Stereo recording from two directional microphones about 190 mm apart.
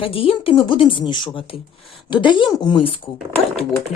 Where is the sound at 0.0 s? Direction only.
30° left (ahead or behind).